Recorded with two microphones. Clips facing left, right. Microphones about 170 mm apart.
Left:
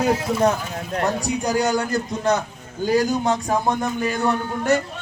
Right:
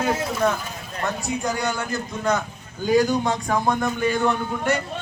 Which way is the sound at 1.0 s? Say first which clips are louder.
Left 2 dB; 40° left (ahead or behind).